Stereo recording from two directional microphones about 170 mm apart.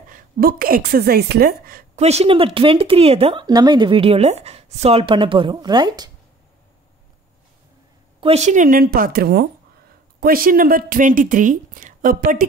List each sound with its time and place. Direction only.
0.1 s a woman's voice: 60° right (ahead or behind)
2.0 s speech: 40° right (ahead or behind)
3.4 s speech: 25° right (ahead or behind)
8.2 s a woman's voice: 40° right (ahead or behind); by 12.4 s 55° right (ahead or behind)